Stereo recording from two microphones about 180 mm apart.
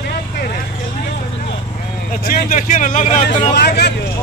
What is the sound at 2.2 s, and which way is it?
Speech, 45° left (ahead or behind).